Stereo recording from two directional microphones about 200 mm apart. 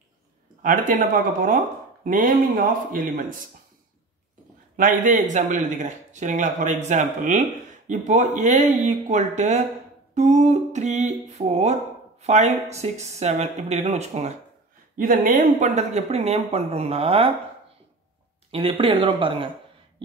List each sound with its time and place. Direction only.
0.6 s a man's voice: 40° right (ahead or behind)
4.7 s a man's voice: 40° right (ahead or behind)
18.5 s speech: 30° right (ahead or behind)